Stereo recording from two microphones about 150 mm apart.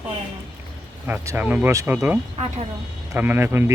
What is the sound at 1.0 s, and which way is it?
Speech, 15° right (ahead or behind).